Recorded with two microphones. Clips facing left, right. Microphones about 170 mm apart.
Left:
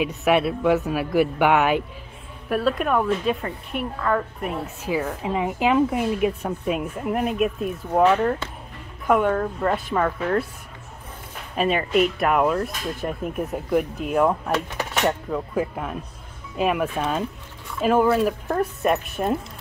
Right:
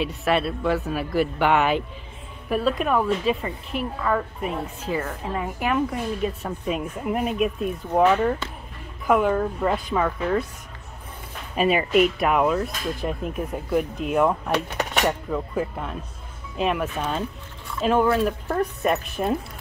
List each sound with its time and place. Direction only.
0.3 s speech: 15° left (ahead or behind)
5.2 s speech: 15° left (ahead or behind)
6.6 s speech: 5° left (ahead or behind)
11.5 s speech: 5° right (ahead or behind)